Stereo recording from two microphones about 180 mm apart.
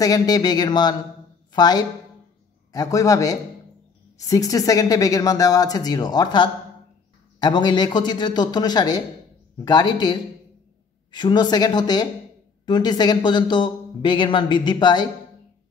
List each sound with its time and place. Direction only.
0.0 s a woman's voice: 20° left (ahead or behind)